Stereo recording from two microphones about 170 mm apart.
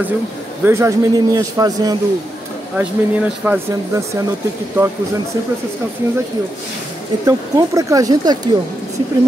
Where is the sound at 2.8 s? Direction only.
10° right (ahead or behind).